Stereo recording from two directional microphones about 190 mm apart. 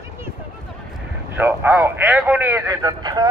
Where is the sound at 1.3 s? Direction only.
10° right (ahead or behind).